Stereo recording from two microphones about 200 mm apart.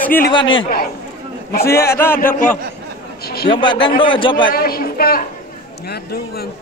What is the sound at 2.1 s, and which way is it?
Speech, 45° left (ahead or behind).